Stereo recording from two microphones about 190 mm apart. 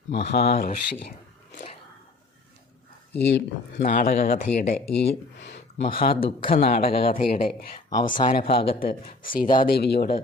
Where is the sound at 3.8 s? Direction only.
45° left (ahead or behind).